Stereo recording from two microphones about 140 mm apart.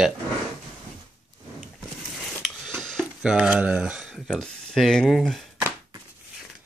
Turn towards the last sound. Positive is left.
turn(degrees=0)  # may be behind; listen again after turning